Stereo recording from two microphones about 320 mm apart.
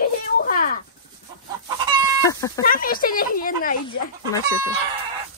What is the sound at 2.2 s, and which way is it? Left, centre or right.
Chicken, centre.